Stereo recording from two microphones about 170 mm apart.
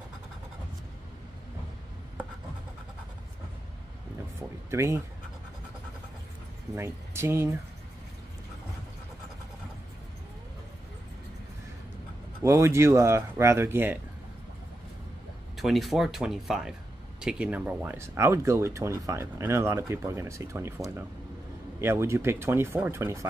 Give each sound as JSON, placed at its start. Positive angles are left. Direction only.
{"t": 4.4, "sound": "speech", "side_deg": -15}
{"t": 6.7, "sound": "speech", "side_deg": -15}
{"t": 12.4, "sound": "speech", "side_deg": -15}
{"t": 15.5, "sound": "speech", "side_deg": 0}